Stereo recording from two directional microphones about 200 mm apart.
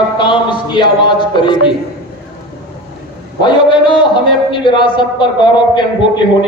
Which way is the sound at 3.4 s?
25° left (ahead or behind).